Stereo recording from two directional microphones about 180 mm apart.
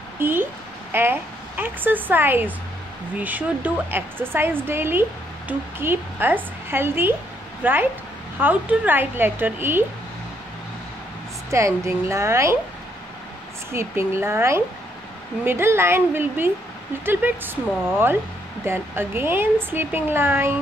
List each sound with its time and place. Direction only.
0.2 s speech: 10° right (ahead or behind)
11.5 s speech: 15° right (ahead or behind)
13.7 s speech: 15° right (ahead or behind)